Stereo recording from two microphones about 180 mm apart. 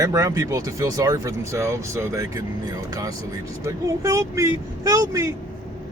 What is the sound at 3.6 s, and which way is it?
Speech, 20° right (ahead or behind).